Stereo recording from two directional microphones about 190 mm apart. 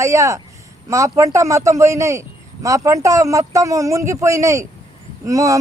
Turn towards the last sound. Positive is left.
turn(degrees=-15)  # may be behind; listen again after turning